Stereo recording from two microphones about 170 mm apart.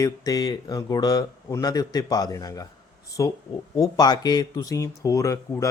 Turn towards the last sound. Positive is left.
turn(degrees=20)  # may be behind; listen again after turning